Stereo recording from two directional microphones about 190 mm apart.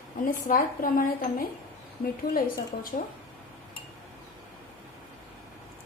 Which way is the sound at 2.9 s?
40° left (ahead or behind).